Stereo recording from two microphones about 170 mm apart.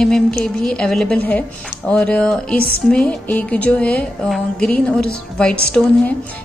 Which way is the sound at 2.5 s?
60° left (ahead or behind).